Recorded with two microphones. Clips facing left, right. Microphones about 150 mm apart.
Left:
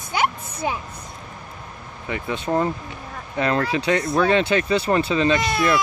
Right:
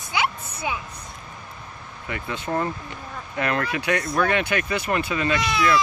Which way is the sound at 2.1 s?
20° left (ahead or behind).